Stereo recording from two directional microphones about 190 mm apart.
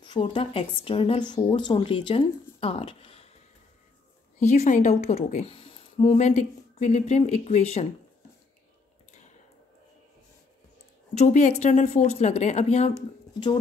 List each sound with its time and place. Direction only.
0.0 s speech: 25° left (ahead or behind)
4.5 s a woman's voice: 40° left (ahead or behind)
11.1 s a woman's voice: 35° left (ahead or behind)